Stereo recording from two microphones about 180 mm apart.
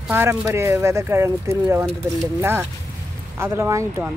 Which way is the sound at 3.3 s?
15° right (ahead or behind).